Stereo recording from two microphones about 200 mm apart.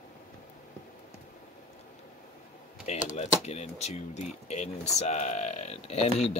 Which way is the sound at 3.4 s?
35° left (ahead or behind).